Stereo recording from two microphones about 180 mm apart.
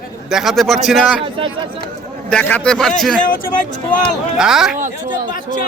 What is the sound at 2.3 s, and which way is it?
Speech, 10° left (ahead or behind).